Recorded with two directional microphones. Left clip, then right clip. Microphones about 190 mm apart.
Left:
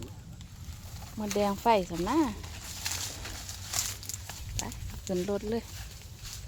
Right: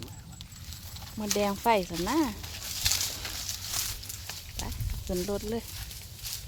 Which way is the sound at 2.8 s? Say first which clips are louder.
Right 6 dB; 20° right (ahead or behind).